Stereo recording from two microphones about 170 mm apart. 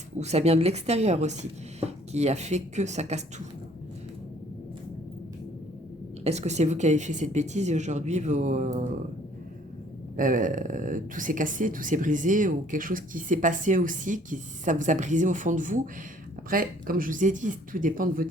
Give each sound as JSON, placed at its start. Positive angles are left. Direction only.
{"t": 0.2, "sound": "speech", "side_deg": -40}
{"t": 6.2, "sound": "speech", "side_deg": -40}
{"t": 10.2, "sound": "speech", "side_deg": -50}